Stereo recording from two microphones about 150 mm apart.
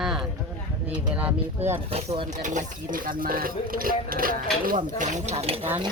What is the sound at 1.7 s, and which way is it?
Speech, 40° right (ahead or behind).